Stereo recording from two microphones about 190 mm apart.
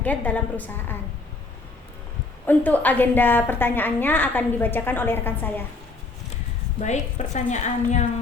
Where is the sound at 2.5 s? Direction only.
10° left (ahead or behind).